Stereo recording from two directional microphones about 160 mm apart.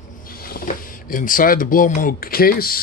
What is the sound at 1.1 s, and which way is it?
Speech, 60° left (ahead or behind).